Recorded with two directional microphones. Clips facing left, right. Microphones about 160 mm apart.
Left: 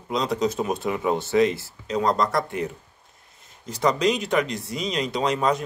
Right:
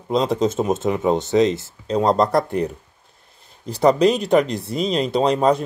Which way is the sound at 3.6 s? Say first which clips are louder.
Right 6 dB; 35° right (ahead or behind).